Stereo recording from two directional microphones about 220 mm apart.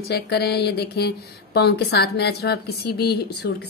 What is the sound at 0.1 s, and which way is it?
A woman's voice, 45° left (ahead or behind).